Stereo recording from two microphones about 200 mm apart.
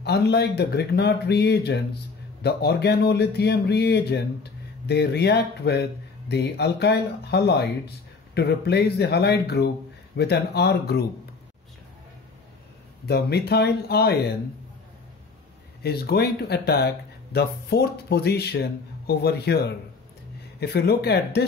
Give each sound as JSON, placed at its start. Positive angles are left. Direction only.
{"t": 0.0, "sound": "speech", "side_deg": 55}
{"t": 13.0, "sound": "speech", "side_deg": 55}
{"t": 15.8, "sound": "speech", "side_deg": 55}
{"t": 20.7, "sound": "speech", "side_deg": 55}